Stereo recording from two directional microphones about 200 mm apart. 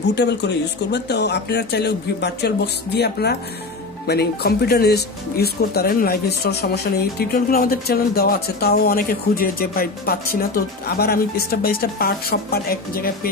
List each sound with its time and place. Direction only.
0.1 s speech: 60° left (ahead or behind)